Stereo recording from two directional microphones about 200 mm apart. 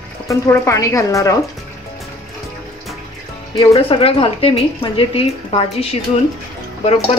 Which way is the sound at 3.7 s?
30° left (ahead or behind).